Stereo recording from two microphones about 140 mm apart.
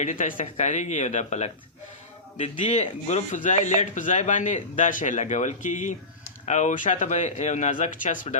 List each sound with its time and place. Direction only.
0.0 s a man's voice: 65° left (ahead or behind)